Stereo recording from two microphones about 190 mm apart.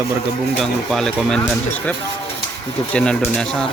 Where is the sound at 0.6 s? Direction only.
Centre (ahead or behind).